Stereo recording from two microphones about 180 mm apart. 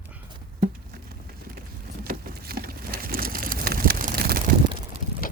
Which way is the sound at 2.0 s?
55° right (ahead or behind).